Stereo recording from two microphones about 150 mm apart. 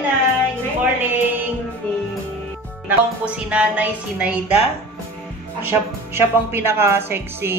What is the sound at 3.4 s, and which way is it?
Speech, 10° right (ahead or behind).